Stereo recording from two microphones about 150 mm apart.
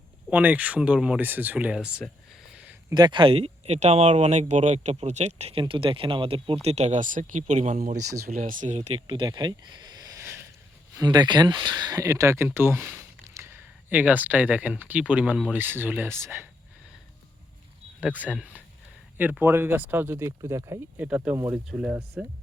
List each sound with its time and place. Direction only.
0.3 s speech: 10° right (ahead or behind)
2.5 s a sound: 10° right (ahead or behind)
2.9 s speech: 30° right (ahead or behind); by 7.9 s 55° right (ahead or behind)
7.9 s speech: 20° right (ahead or behind)
8.3 s speech: 60° right (ahead or behind)
9.0 s speech: 35° right (ahead or behind); by 10.4 s 15° right (ahead or behind)
10.9 s speech: 25° right (ahead or behind)
18.0 s speech: 10° right (ahead or behind)
21.0 s speech: 10° right (ahead or behind)